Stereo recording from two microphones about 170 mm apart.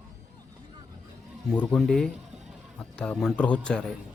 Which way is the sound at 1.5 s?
5° left (ahead or behind).